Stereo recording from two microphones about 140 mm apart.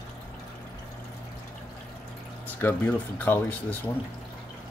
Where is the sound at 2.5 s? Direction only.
15° left (ahead or behind).